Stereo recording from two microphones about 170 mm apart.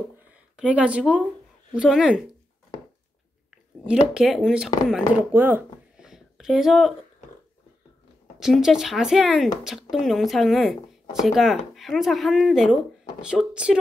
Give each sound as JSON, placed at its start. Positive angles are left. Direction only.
{"t": 0.6, "sound": "a woman's voice", "side_deg": -5}
{"t": 3.8, "sound": "speech", "side_deg": -5}
{"t": 8.4, "sound": "speech", "side_deg": 0}